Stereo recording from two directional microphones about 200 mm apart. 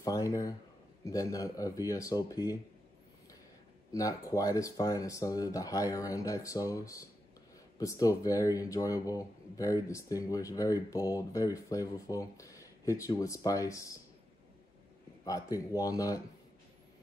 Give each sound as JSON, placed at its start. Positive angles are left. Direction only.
{"t": 0.0, "sound": "speech", "side_deg": 15}
{"t": 3.9, "sound": "speech", "side_deg": 15}
{"t": 15.2, "sound": "speech", "side_deg": 20}